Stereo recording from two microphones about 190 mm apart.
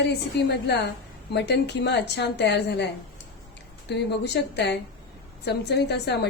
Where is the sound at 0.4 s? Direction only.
60° left (ahead or behind).